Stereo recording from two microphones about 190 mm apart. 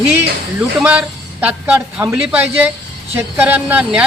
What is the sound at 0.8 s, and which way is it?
Speech, 5° right (ahead or behind).